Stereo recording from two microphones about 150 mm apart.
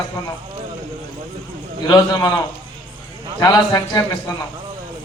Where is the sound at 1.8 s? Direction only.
25° left (ahead or behind).